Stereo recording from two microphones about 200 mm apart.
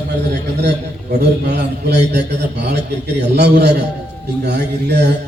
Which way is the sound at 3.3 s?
55° right (ahead or behind).